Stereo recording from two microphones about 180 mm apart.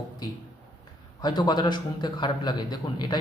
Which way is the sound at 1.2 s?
25° left (ahead or behind).